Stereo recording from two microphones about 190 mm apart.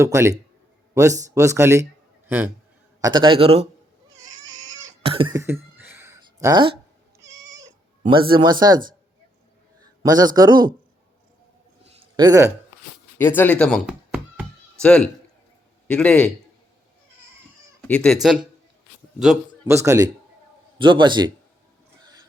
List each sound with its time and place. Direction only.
0.0 s speech: 15° right (ahead or behind)
3.0 s speech: 25° right (ahead or behind)
4.5 s cat: 25° right (ahead or behind)
8.1 s speech: 25° right (ahead or behind)
10.0 s speech: 20° right (ahead or behind)
11.9 s a sound: 20° right (ahead or behind)
13.1 s speech: 10° left (ahead or behind); by 14.4 s 5° right (ahead or behind)
14.8 s speech: 5° left (ahead or behind)
17.8 s speech: 5° left (ahead or behind)
19.6 s speech: 15° right (ahead or behind)